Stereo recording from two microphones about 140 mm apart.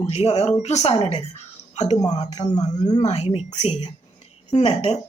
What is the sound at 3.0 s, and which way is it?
Speech, 45° left (ahead or behind).